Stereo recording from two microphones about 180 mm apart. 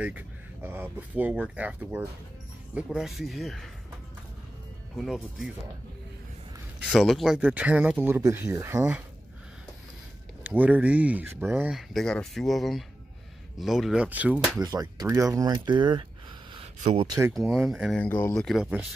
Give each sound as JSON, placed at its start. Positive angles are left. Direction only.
{"t": 0.0, "sound": "speech", "side_deg": -10}
{"t": 4.9, "sound": "speech", "side_deg": 0}
{"t": 6.9, "sound": "speech", "side_deg": 0}
{"t": 10.4, "sound": "speech", "side_deg": -10}
{"t": 14.6, "sound": "speech", "side_deg": -20}
{"t": 16.8, "sound": "speech", "side_deg": -35}
{"t": 17.3, "sound": "speech", "side_deg": 0}
{"t": 18.0, "sound": "speech", "side_deg": 10}